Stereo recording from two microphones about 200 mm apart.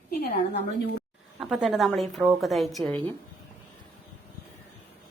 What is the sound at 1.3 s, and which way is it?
A woman's voice, 5° right (ahead or behind).